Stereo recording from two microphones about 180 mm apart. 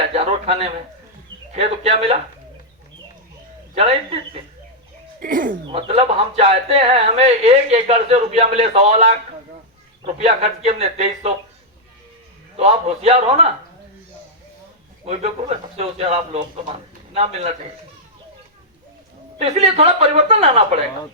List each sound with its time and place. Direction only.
0.1 s a sound: 35° right (ahead or behind)
1.5 s speech: 35° right (ahead or behind)
3.8 s speech: 35° right (ahead or behind)
5.2 s speech: 50° right (ahead or behind)
5.6 s speech: 30° right (ahead or behind)
12.5 s speech: 35° right (ahead or behind)
15.0 s speech: 35° right (ahead or behind)
19.4 s speech: 35° right (ahead or behind)